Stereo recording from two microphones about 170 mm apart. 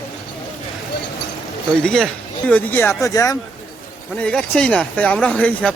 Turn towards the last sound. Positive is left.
turn(degrees=5)  # may be behind; listen again after turning